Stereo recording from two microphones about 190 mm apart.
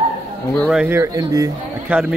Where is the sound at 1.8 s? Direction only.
5° right (ahead or behind).